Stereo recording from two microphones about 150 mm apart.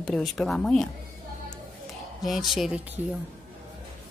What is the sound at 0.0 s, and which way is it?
Speech, centre (ahead or behind).